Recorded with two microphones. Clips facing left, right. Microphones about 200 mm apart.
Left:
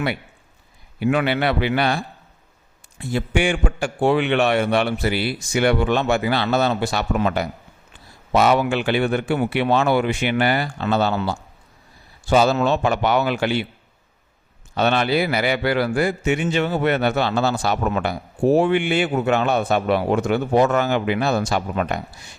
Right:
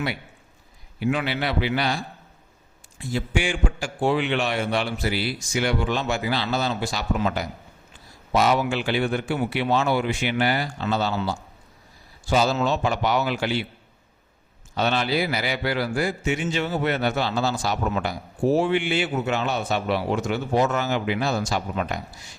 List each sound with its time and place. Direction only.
0.9 s a man's voice: 60° left (ahead or behind)
14.8 s a man's voice: 60° left (ahead or behind)